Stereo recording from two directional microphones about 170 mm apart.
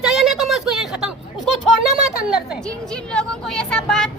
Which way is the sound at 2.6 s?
5° left (ahead or behind).